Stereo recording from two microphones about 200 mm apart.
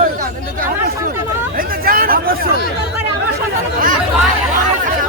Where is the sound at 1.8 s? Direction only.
45° right (ahead or behind).